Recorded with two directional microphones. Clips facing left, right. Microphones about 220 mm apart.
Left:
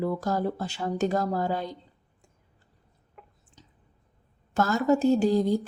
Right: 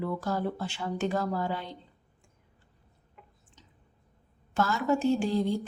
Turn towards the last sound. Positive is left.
turn(degrees=40)  # may be behind; listen again after turning